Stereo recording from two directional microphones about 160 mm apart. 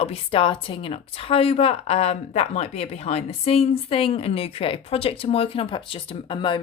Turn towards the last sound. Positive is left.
turn(degrees=30)  # may be behind; listen again after turning